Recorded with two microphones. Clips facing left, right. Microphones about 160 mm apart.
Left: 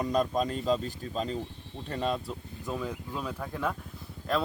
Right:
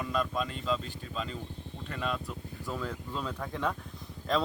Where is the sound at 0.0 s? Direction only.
40° left (ahead or behind).